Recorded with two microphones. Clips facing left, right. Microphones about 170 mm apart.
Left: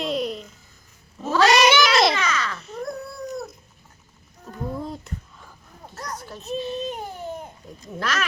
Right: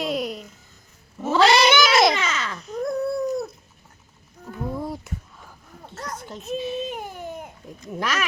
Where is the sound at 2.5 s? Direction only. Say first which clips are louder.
Right 4 dB; centre (ahead or behind).